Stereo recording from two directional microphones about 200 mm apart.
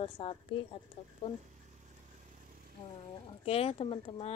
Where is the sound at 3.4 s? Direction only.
30° left (ahead or behind).